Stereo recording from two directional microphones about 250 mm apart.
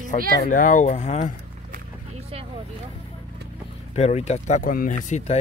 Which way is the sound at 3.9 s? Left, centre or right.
Left.